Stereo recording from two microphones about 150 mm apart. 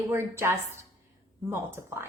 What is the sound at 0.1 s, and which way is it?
A woman's voice, 15° right (ahead or behind).